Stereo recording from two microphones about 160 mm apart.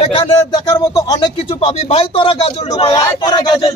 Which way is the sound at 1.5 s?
40° left (ahead or behind).